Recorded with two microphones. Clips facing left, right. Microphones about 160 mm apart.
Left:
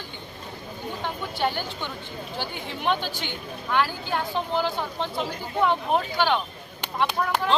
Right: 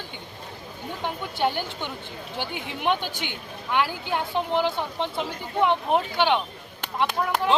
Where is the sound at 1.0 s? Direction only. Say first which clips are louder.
Right 2 dB; 15° right (ahead or behind).